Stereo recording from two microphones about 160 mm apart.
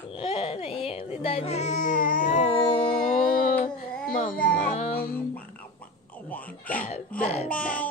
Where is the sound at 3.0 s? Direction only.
55° left (ahead or behind).